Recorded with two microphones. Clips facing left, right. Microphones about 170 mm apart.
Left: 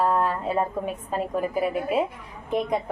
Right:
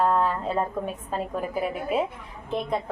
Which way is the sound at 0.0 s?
10° left (ahead or behind).